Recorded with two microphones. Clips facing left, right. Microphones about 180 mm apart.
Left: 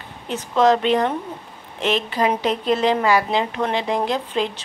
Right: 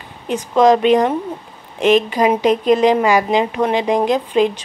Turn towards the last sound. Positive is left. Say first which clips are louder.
# right 7 dB
turn(degrees=-15)  # may be behind; listen again after turning